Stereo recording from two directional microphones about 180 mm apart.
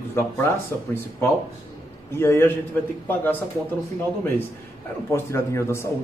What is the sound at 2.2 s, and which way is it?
Speech, 15° left (ahead or behind).